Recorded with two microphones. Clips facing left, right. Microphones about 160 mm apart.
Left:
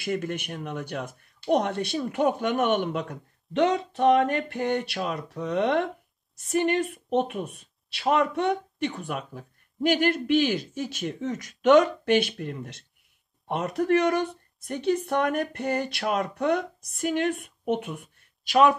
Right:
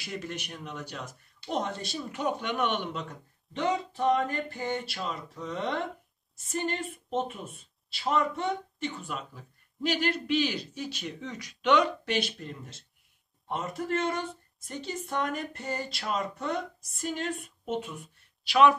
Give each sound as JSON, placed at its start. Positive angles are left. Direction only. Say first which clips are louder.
{"t": 0.0, "sound": "a woman's voice", "louder": "left 8 dB", "side_deg": 55}